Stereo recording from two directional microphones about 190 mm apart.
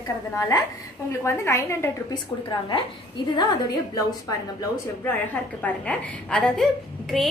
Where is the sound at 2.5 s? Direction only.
25° left (ahead or behind).